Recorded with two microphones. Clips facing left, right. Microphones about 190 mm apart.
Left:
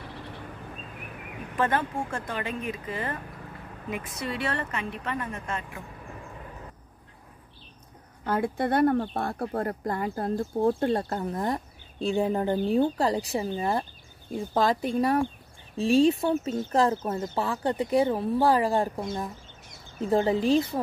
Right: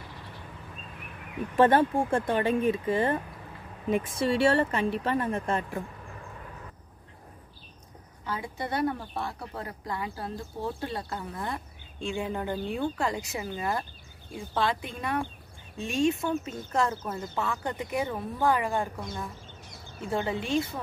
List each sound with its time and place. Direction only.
1.6 s a woman's voice: 30° right (ahead or behind)
8.2 s speech: 55° left (ahead or behind); by 13.8 s 30° left (ahead or behind)
14.3 s speech: 40° left (ahead or behind)